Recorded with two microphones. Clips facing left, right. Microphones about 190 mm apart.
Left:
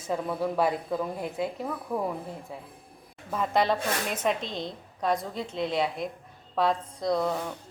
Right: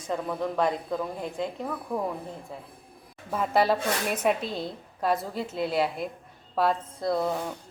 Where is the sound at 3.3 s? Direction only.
5° right (ahead or behind).